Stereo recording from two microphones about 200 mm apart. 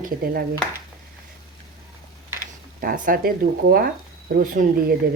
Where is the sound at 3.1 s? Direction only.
45° right (ahead or behind).